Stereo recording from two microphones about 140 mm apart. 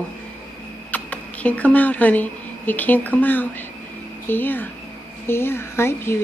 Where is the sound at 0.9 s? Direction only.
10° left (ahead or behind).